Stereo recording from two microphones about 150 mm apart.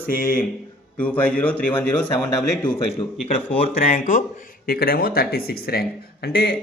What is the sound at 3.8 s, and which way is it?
A man's voice, 60° left (ahead or behind).